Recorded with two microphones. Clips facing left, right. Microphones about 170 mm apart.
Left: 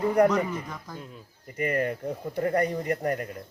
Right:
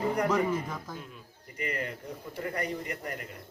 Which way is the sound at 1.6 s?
50° left (ahead or behind).